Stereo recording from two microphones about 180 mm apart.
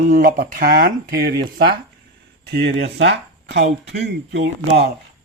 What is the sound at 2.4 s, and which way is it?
Speech, 65° right (ahead or behind).